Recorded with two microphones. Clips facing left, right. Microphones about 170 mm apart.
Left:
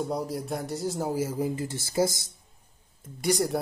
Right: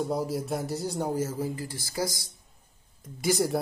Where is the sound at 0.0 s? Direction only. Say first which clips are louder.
Right 1 dB; centre (ahead or behind); by 2.3 s 25° left (ahead or behind).